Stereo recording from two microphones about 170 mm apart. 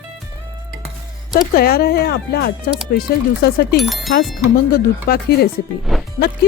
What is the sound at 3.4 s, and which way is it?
Speech, 65° left (ahead or behind).